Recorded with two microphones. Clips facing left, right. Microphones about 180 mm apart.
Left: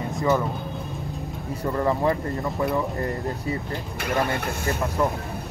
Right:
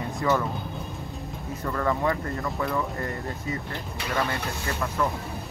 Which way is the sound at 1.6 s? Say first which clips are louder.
Left 3 dB; 25° left (ahead or behind).